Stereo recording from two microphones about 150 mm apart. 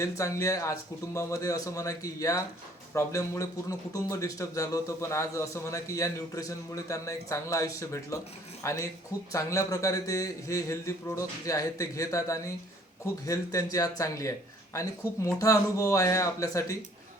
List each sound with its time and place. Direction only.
0.0 s a man's voice: 20° left (ahead or behind)